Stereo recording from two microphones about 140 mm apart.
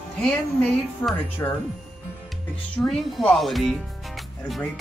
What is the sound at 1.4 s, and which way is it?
Speech, 20° left (ahead or behind).